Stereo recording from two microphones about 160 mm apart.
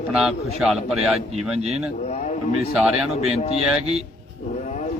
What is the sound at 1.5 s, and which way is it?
Speech, 40° right (ahead or behind).